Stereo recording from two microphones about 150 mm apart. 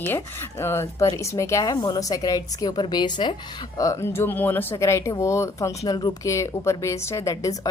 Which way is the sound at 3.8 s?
20° left (ahead or behind).